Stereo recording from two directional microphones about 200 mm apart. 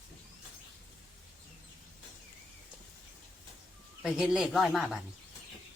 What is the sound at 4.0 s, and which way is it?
Speech, 5° right (ahead or behind).